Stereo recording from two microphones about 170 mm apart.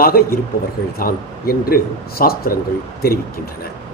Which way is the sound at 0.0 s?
60° left (ahead or behind).